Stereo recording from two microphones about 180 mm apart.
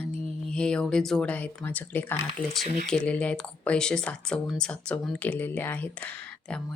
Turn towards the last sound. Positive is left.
turn(degrees=5)  # may be behind; listen again after turning